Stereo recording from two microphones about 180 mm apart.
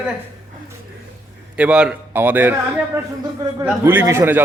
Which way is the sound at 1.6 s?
5° right (ahead or behind).